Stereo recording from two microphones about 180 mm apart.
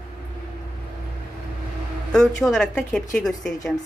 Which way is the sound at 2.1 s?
5° left (ahead or behind).